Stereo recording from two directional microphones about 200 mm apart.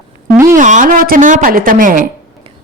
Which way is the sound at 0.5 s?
40° right (ahead or behind).